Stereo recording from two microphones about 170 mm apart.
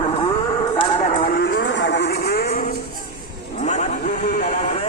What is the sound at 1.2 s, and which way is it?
Music, 65° left (ahead or behind).